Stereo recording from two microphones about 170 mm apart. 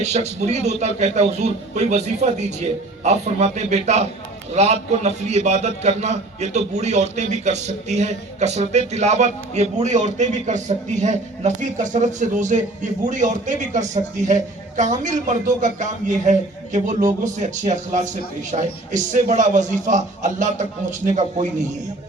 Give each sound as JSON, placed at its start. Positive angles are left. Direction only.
{"t": 0.0, "sound": "a man's voice", "side_deg": -40}